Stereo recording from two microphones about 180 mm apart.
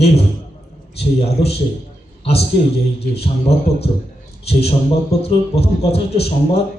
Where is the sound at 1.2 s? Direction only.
35° left (ahead or behind).